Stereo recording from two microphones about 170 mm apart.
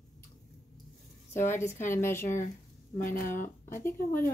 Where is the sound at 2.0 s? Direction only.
15° left (ahead or behind).